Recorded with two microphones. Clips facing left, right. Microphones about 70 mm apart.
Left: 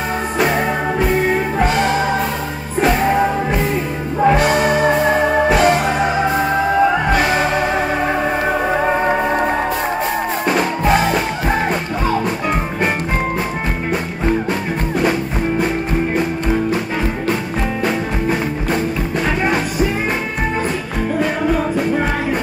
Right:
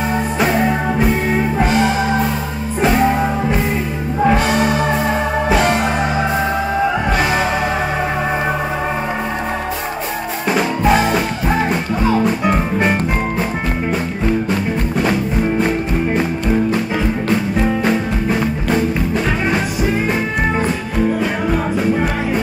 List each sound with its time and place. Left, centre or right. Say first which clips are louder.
4.3 s music: left 2 dB; centre
10.5 s music: right 2 dB; centre